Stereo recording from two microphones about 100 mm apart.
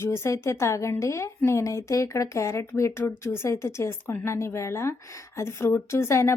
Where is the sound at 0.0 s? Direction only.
25° left (ahead or behind).